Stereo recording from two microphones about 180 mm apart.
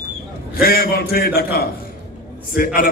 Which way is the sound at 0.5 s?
55° left (ahead or behind).